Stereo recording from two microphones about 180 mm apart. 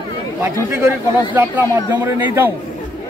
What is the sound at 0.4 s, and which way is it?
A man's voice, 15° right (ahead or behind).